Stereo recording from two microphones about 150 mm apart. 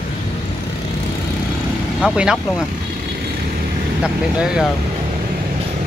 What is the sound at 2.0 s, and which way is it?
Speech, 5° right (ahead or behind).